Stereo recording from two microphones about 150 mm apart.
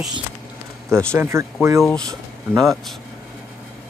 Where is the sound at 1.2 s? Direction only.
15° right (ahead or behind).